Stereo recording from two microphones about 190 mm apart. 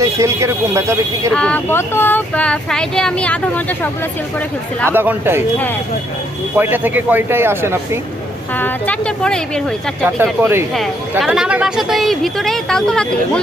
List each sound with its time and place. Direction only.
0.0 s speech: 15° right (ahead or behind)
1.3 s speech: 5° left (ahead or behind)
4.9 s speech: 10° right (ahead or behind)
6.6 s speech: 10° right (ahead or behind)
8.5 s speech: 10° left (ahead or behind)
10.2 s speech: 10° right (ahead or behind)